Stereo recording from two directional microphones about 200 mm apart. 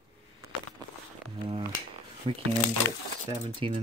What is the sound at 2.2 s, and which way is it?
Speech, 30° right (ahead or behind).